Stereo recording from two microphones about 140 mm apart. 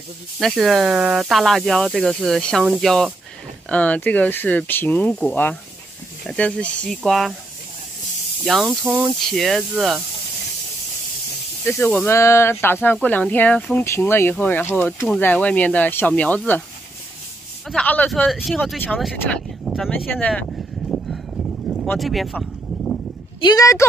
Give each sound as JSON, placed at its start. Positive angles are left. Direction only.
{"t": 0.4, "sound": "speech", "side_deg": 0}
{"t": 8.5, "sound": "speech", "side_deg": -5}
{"t": 11.6, "sound": "speech", "side_deg": 10}
{"t": 17.6, "sound": "speech", "side_deg": 10}
{"t": 18.2, "sound": "speech", "side_deg": 0}
{"t": 19.6, "sound": "a sound", "side_deg": 0}
{"t": 20.2, "sound": "a sound", "side_deg": 10}
{"t": 21.9, "sound": "speech", "side_deg": 0}
{"t": 23.4, "sound": "speech", "side_deg": 25}